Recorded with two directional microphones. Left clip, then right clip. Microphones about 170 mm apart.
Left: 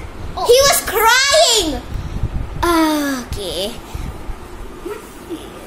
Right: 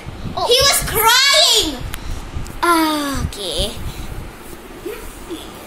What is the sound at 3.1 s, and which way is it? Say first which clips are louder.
Speech: even; 15° left (ahead or behind).